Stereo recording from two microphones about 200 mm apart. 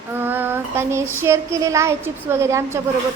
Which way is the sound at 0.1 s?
10° right (ahead or behind).